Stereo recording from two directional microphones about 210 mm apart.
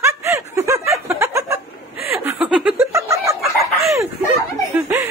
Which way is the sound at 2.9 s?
15° right (ahead or behind).